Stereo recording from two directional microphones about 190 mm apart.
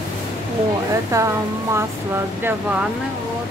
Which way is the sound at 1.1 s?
15° right (ahead or behind).